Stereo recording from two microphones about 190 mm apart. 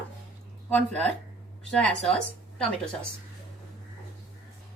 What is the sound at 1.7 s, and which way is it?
Speech, 5° left (ahead or behind).